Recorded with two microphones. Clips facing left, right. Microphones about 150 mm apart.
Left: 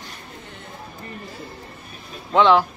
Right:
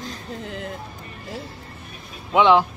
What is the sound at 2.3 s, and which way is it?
Speech, 15° right (ahead or behind).